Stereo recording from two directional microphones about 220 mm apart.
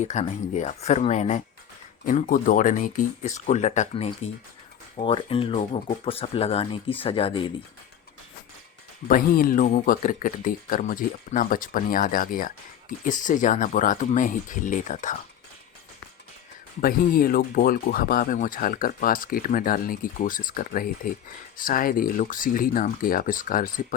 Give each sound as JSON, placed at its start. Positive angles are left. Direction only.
{"t": 0.0, "sound": "speech", "side_deg": 30}
{"t": 9.0, "sound": "speech", "side_deg": 40}
{"t": 16.8, "sound": "speech", "side_deg": 40}